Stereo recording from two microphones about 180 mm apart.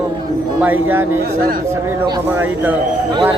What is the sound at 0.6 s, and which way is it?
Speech, 10° right (ahead or behind).